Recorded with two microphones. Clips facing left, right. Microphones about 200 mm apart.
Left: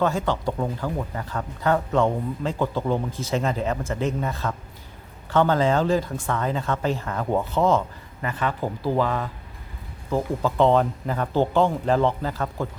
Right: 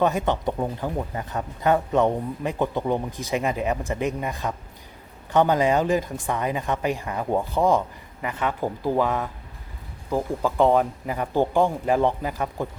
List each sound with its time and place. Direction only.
0.0 s speech: 20° right (ahead or behind)